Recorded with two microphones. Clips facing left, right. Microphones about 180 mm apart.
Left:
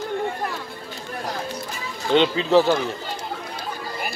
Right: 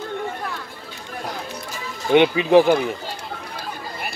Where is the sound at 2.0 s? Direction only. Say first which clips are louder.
Right 3 dB; 15° right (ahead or behind).